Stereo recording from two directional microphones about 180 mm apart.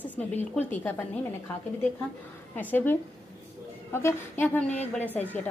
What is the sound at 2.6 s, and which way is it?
A woman's voice, 10° left (ahead or behind).